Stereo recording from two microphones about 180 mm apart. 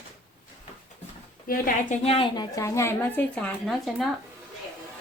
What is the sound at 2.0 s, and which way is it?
A woman's voice, 30° left (ahead or behind).